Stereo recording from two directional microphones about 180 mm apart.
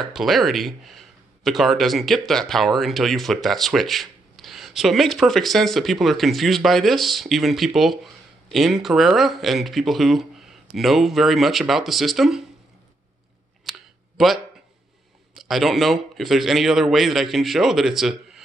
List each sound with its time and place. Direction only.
0.1 s speech: centre (ahead or behind)
13.7 s clicking: centre (ahead or behind)
15.4 s speech: centre (ahead or behind)